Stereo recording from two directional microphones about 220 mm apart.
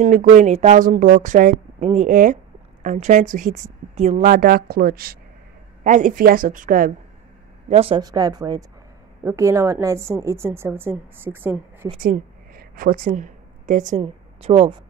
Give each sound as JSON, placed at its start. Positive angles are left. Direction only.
{"t": 0.0, "sound": "a woman's voice", "side_deg": -35}
{"t": 7.6, "sound": "a woman's voice", "side_deg": -25}
{"t": 12.0, "sound": "a sound", "side_deg": -40}
{"t": 14.0, "sound": "speech", "side_deg": -25}